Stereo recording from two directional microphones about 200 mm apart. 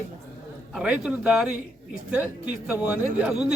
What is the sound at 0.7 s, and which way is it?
Speech, 5° right (ahead or behind).